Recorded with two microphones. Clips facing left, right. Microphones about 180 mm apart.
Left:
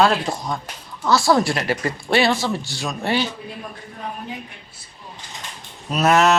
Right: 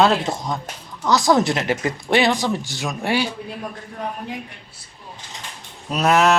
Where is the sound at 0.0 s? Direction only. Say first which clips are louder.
Right 1 dB; 20° right (ahead or behind).